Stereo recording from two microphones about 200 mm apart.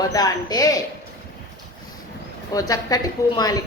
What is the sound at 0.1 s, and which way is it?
Speech, 20° left (ahead or behind).